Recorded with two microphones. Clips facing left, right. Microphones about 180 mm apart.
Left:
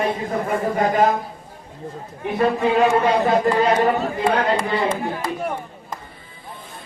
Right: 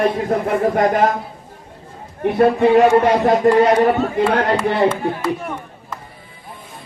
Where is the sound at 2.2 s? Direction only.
70° right (ahead or behind).